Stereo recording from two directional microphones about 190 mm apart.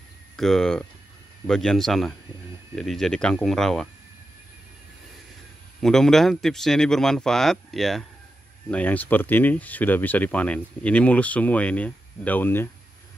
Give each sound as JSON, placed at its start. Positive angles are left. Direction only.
{"t": 0.4, "sound": "speech", "side_deg": 0}
{"t": 5.8, "sound": "speech", "side_deg": 5}